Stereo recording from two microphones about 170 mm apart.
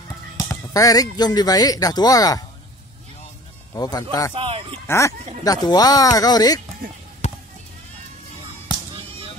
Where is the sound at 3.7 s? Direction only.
20° left (ahead or behind).